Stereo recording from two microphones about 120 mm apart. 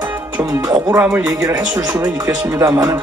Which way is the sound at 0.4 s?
20° right (ahead or behind).